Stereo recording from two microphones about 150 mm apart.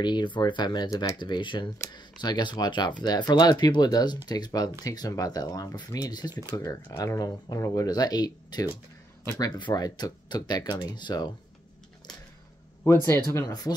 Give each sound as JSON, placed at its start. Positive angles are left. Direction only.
{"t": 0.0, "sound": "speech", "side_deg": 30}
{"t": 9.6, "sound": "speech", "side_deg": 30}
{"t": 12.8, "sound": "speech", "side_deg": 15}